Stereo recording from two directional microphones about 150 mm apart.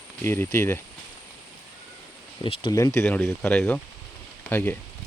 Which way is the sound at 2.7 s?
20° left (ahead or behind).